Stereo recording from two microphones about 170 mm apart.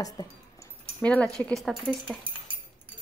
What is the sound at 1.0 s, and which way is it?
A woman's voice, 5° left (ahead or behind).